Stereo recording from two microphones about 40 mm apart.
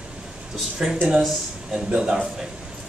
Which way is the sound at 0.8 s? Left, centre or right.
Right.